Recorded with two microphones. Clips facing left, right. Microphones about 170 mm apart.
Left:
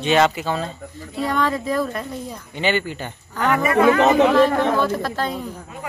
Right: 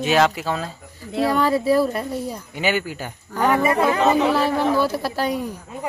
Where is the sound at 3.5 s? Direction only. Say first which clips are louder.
Left 4 dB; 30° right (ahead or behind).